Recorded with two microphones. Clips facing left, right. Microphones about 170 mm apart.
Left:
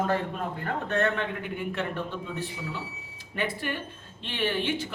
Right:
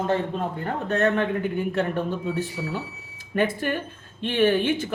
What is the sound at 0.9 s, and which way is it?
Speech, 40° right (ahead or behind).